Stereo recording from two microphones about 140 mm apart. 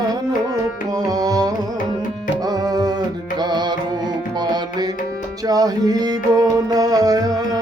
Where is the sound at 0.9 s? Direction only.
25° right (ahead or behind).